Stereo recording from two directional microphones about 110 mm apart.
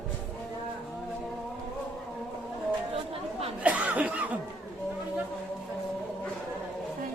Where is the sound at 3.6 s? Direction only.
15° right (ahead or behind).